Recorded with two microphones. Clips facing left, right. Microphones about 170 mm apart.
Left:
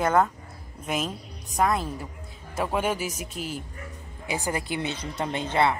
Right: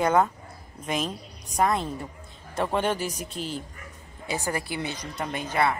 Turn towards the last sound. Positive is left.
turn(degrees=25)  # may be behind; listen again after turning